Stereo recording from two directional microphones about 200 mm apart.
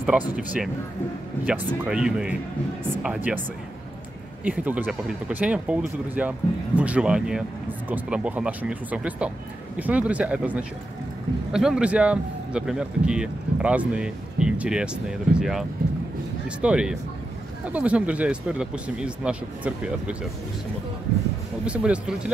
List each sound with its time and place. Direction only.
0.4 s speech: 5° right (ahead or behind)
4.5 s speech: 10° right (ahead or behind)
21.6 s speech: 5° right (ahead or behind)